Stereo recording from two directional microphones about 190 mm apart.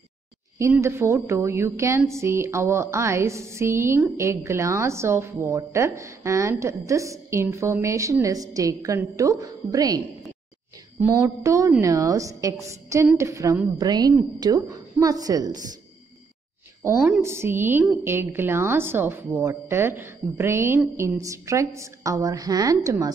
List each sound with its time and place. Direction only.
0.6 s a woman's voice: 15° right (ahead or behind)
16.8 s a woman's voice: 10° right (ahead or behind)